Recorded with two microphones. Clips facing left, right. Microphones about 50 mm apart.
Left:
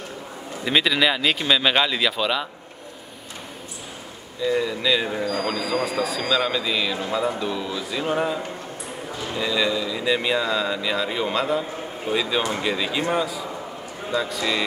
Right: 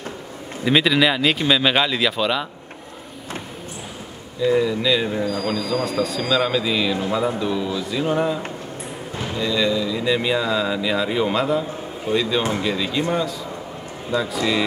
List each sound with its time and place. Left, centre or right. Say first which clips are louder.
0.7 s speech: right 3 dB; centre
4.5 s speech: right 3 dB; centre
5.2 s speech: right 1 dB; left
5.5 s speech: right 2 dB; centre
5.9 s speech: right 2 dB; centre
9.4 s speech: right 2 dB; centre
14.1 s speech: right 3 dB; centre